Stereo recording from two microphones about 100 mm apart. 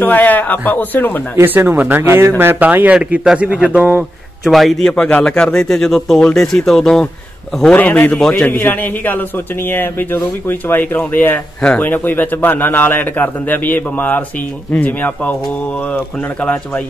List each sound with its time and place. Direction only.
0.0 s a man's voice: 20° left (ahead or behind)
1.3 s speech: 20° right (ahead or behind)
4.5 s a man's voice: centre (ahead or behind)
7.7 s a man's voice: 15° left (ahead or behind)